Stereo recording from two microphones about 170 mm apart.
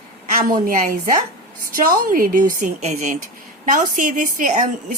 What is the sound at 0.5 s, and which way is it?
Speech, 50° right (ahead or behind).